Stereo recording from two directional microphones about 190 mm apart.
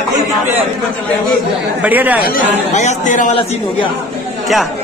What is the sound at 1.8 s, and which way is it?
Speech, 10° right (ahead or behind).